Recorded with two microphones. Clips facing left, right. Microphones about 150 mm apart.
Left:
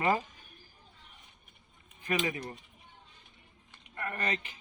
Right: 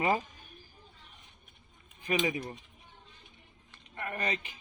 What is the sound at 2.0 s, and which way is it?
Speech, 15° right (ahead or behind).